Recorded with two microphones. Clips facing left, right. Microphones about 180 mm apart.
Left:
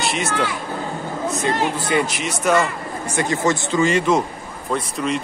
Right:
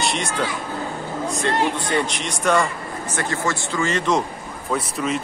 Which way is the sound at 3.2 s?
20° left (ahead or behind).